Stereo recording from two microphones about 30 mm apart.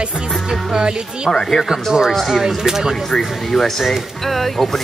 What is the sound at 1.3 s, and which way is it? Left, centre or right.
Speech, centre.